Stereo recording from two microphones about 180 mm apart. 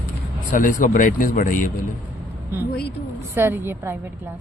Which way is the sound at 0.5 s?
45° left (ahead or behind).